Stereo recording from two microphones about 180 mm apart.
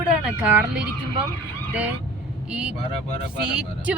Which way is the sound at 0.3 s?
5° right (ahead or behind).